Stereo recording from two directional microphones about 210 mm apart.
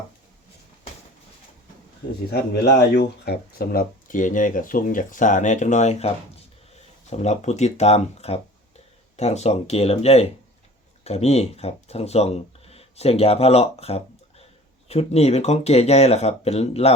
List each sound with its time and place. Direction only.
2.3 s speech: 55° left (ahead or behind); by 16.9 s 30° left (ahead or behind)